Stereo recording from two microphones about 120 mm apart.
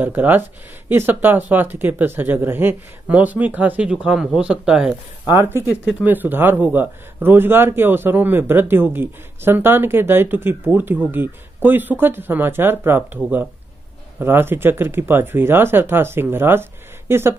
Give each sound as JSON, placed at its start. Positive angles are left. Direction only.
{"t": 0.0, "sound": "speech", "side_deg": -15}
{"t": 5.3, "sound": "speech", "side_deg": -20}
{"t": 5.9, "sound": "speech", "side_deg": -10}